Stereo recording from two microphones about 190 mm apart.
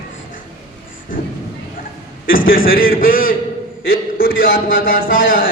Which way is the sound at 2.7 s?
50° left (ahead or behind).